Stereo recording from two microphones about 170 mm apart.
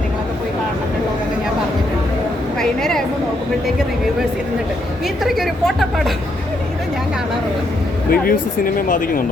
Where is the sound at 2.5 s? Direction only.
Centre (ahead or behind).